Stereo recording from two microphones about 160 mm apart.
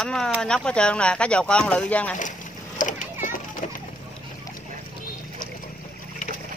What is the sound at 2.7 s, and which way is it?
Children playing, 55° left (ahead or behind).